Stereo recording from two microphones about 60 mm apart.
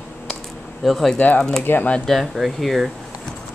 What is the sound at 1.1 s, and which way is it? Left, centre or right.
Speech, left.